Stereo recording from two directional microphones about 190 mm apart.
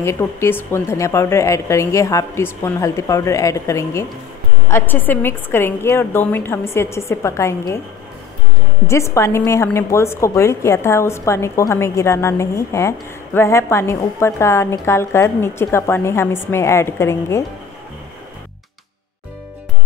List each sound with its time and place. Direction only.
0.0 s a woman's voice: 15° left (ahead or behind)
8.8 s a woman's voice: 15° left (ahead or behind)